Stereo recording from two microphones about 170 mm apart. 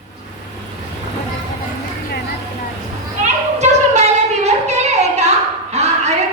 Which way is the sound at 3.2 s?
40° right (ahead or behind).